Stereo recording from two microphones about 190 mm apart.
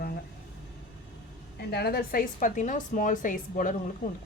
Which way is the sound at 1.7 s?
55° left (ahead or behind).